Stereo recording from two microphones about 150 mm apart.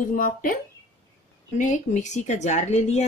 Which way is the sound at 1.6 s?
55° left (ahead or behind).